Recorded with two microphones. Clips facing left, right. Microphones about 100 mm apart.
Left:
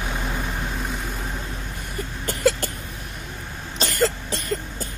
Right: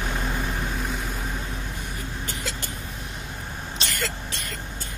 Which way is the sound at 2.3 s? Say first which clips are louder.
Left 11 dB; 50° left (ahead or behind).